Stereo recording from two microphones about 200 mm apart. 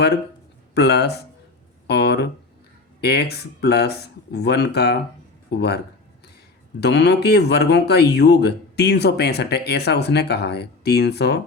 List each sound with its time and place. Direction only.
0.7 s speech: 55° left (ahead or behind)